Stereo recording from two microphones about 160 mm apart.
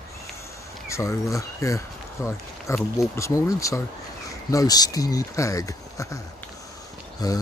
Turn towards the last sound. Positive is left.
turn(degrees=20)  # may be behind; listen again after turning